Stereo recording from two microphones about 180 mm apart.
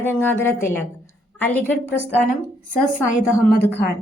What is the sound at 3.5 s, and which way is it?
Speech, 60° left (ahead or behind).